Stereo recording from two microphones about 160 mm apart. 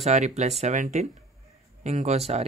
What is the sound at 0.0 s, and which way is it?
Speech, 45° right (ahead or behind).